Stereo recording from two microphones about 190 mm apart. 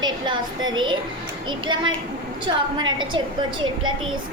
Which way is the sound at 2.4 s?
25° right (ahead or behind).